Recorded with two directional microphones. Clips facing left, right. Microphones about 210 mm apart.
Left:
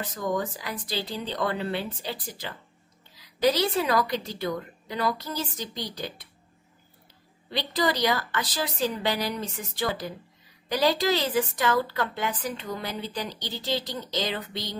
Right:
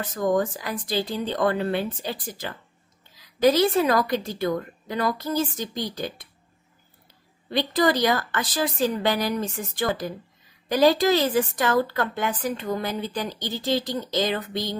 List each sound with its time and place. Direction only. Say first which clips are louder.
0.2 s a woman's voice: right 6 dB; 50° right (ahead or behind)
7.5 s a woman's voice: right 5 dB; 50° right (ahead or behind)